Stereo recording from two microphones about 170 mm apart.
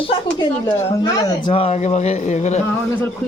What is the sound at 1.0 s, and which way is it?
Speech, 20° left (ahead or behind).